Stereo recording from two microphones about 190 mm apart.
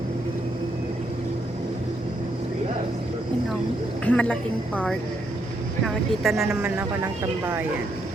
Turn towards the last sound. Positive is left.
turn(degrees=-10)  # may be behind; listen again after turning